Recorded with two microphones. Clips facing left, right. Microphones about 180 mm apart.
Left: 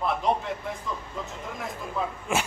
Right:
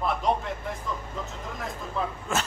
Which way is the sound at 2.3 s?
15° left (ahead or behind).